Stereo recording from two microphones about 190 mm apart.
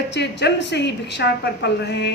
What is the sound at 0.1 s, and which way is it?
A man's voice, 65° left (ahead or behind).